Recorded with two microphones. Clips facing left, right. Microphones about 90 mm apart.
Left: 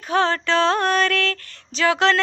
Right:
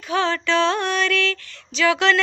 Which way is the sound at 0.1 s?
40° left (ahead or behind).